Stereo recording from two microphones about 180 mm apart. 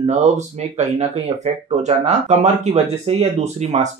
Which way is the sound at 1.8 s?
40° right (ahead or behind).